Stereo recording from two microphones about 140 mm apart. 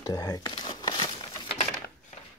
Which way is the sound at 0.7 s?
30° left (ahead or behind).